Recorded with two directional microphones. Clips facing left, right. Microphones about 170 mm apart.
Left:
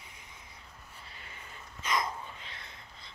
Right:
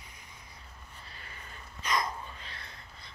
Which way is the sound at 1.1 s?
20° left (ahead or behind).